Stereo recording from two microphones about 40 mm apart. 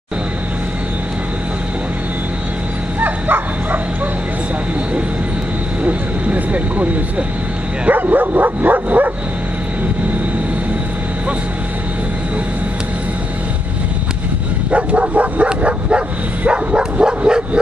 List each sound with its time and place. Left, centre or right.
3.0 s bow-wow: right
5.9 s vehicle: right
7.9 s dog: right
14.7 s bow-wow: right